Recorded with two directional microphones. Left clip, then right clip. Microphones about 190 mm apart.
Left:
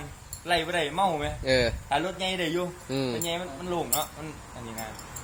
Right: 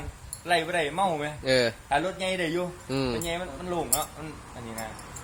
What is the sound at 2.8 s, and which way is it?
Speech, 10° right (ahead or behind).